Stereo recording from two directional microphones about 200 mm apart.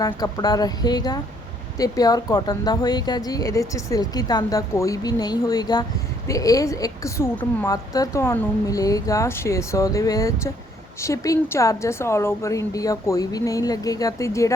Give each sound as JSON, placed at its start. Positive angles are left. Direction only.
{"t": 0.0, "sound": "a woman's voice", "side_deg": 20}